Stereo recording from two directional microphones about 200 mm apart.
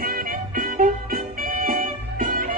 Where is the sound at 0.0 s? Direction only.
45° right (ahead or behind).